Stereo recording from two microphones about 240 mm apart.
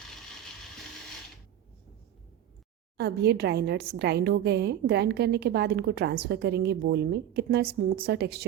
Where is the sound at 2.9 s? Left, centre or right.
Right.